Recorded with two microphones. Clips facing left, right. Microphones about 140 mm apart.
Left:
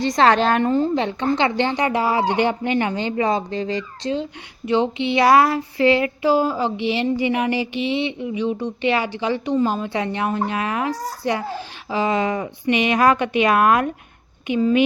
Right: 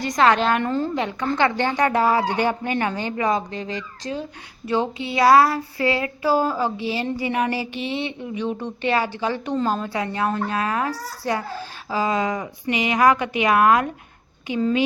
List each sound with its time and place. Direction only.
0.0 s a woman's voice: 30° left (ahead or behind)
0.6 s speech: 20° left (ahead or behind)
1.8 s speech: 50° right (ahead or behind)
2.0 s speech: 20° left (ahead or behind)
7.3 s a sound: 40° right (ahead or behind)
7.8 s speech: 45° right (ahead or behind)
8.0 s speech: 15° left (ahead or behind)
9.9 s speech: 25° left (ahead or behind)
13.3 s a woman's voice: 20° right (ahead or behind)
14.4 s speech: 20° left (ahead or behind)